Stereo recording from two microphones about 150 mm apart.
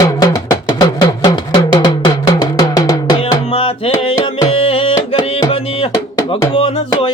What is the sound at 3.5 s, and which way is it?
Music, 40° left (ahead or behind).